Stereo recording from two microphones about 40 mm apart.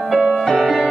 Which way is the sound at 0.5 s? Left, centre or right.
Centre.